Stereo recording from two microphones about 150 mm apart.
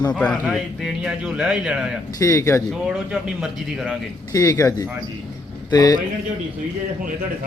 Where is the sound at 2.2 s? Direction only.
20° left (ahead or behind).